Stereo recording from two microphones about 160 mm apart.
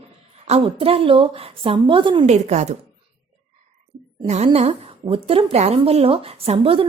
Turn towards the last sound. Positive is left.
turn(degrees=-35)  # may be behind; listen again after turning